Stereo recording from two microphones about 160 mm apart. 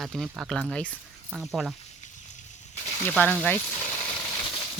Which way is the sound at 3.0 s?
10° left (ahead or behind).